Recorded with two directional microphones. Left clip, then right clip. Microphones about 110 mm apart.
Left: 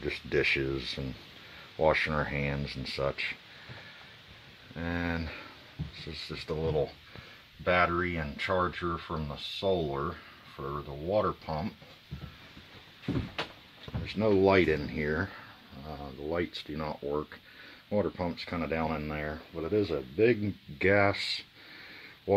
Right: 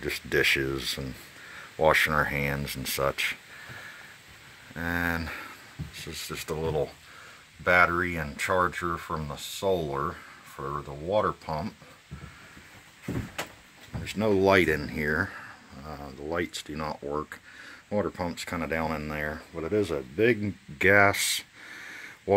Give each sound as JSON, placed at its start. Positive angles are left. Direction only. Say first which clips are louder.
{"t": 0.0, "sound": "speech", "louder": "right 4 dB", "side_deg": -10}
{"t": 4.7, "sound": "speech", "louder": "right 5 dB", "side_deg": -10}
{"t": 14.0, "sound": "speech", "louder": "right 2 dB", "side_deg": -10}